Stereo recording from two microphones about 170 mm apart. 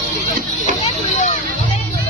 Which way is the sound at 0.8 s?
40° left (ahead or behind).